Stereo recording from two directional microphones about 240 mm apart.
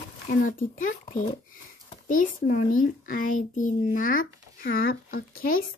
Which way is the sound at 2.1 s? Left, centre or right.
Left.